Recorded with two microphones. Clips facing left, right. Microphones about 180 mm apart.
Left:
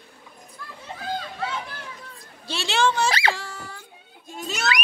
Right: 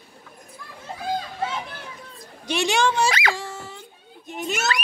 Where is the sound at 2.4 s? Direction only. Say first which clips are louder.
Right 2 dB; 15° right (ahead or behind).